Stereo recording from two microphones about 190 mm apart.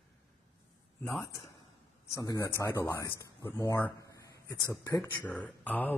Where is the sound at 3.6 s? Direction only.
10° left (ahead or behind).